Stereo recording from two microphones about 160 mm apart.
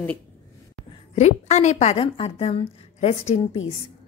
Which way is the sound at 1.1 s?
45° left (ahead or behind).